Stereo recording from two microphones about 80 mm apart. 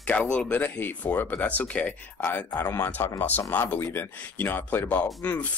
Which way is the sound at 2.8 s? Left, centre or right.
Left.